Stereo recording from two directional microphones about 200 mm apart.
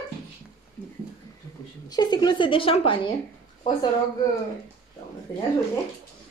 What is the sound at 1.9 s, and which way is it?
A woman's voice, 20° left (ahead or behind).